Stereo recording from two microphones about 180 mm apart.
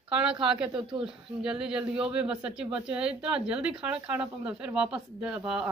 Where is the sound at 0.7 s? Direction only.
25° right (ahead or behind).